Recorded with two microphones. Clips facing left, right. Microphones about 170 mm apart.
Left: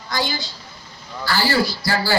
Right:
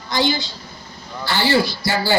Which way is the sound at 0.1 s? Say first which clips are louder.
Right 5 dB; 25° right (ahead or behind).